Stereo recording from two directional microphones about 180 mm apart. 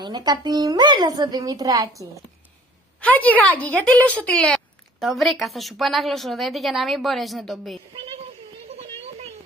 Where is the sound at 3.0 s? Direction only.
10° left (ahead or behind).